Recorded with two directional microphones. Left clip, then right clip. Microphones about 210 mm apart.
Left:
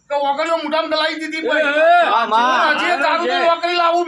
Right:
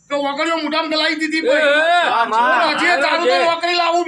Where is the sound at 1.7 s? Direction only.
10° right (ahead or behind).